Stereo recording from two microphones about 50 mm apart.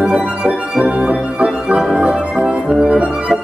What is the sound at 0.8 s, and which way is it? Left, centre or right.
Music, right.